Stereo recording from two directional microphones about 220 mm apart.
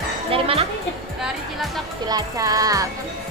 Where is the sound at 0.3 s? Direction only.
25° right (ahead or behind).